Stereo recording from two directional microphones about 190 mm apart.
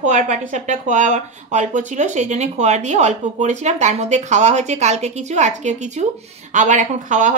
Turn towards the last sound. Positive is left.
turn(degrees=-40)  # may be behind; listen again after turning